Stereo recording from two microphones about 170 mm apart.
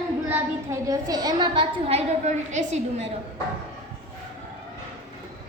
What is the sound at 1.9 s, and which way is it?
A woman's voice, 40° right (ahead or behind).